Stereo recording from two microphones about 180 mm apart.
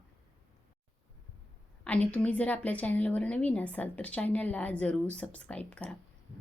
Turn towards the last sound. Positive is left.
turn(degrees=5)  # may be behind; listen again after turning